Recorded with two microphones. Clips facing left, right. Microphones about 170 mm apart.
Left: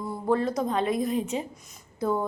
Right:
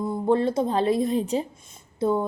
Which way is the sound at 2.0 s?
25° right (ahead or behind).